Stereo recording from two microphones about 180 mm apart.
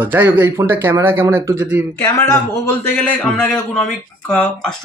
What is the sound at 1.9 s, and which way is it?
Speech, 15° left (ahead or behind).